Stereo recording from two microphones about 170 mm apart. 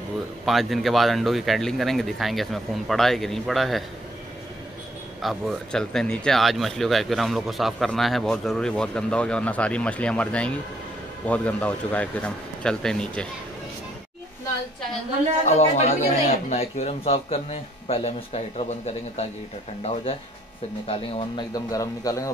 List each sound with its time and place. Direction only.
0.5 s speech: centre (ahead or behind)
5.2 s speech: centre (ahead or behind)
15.4 s speech: 40° left (ahead or behind)
20.8 s speech: 35° left (ahead or behind)